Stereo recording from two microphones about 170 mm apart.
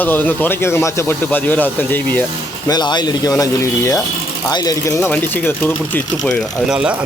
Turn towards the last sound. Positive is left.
turn(degrees=-5)  # may be behind; listen again after turning